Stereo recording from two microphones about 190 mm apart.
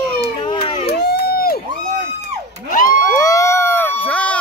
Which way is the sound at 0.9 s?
55° left (ahead or behind).